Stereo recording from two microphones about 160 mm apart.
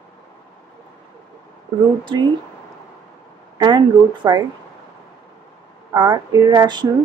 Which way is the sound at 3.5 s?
25° right (ahead or behind).